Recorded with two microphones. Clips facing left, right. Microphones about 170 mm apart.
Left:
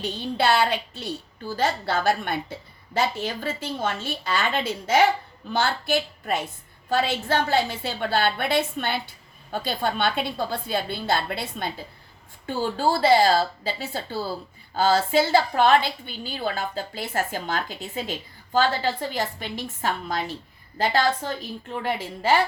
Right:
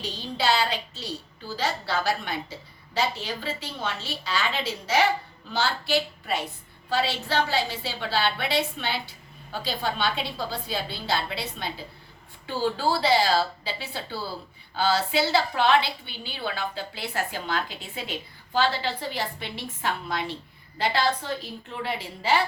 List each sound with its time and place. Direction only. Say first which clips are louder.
0.0 s a woman's voice: left 3 dB; 55° left (ahead or behind)